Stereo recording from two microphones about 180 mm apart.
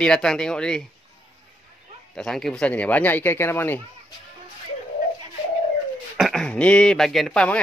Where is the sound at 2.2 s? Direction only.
Centre (ahead or behind).